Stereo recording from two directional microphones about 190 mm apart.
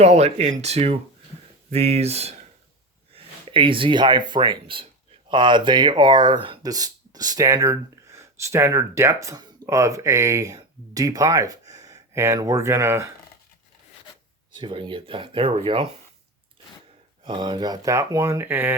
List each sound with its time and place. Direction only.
0.0 s speech: 35° right (ahead or behind)
3.5 s speech: 25° right (ahead or behind)
14.5 s speech: 25° right (ahead or behind)
17.2 s speech: 25° right (ahead or behind)